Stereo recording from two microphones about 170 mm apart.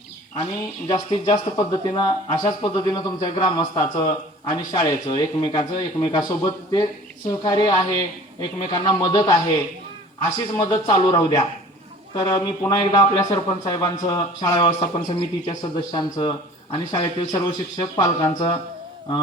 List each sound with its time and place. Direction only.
0.9 s speech: 25° left (ahead or behind)